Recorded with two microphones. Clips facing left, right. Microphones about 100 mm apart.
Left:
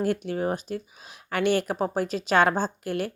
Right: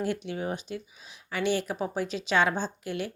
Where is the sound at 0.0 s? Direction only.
45° left (ahead or behind).